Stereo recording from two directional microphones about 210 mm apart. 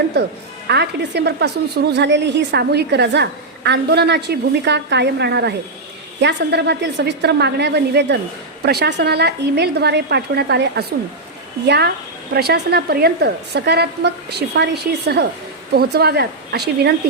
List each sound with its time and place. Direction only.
0.1 s a woman's voice: 55° right (ahead or behind)